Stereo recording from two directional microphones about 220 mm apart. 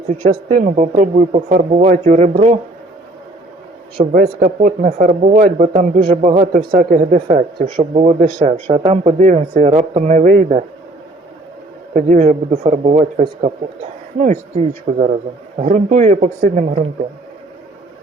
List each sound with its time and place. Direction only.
0.2 s speech: 35° right (ahead or behind)
3.9 s speech: 40° right (ahead or behind)
11.9 s speech: 35° right (ahead or behind)
14.9 s speech: 35° right (ahead or behind)